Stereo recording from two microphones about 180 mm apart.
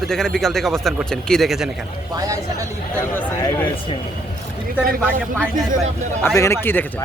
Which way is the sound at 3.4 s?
15° left (ahead or behind).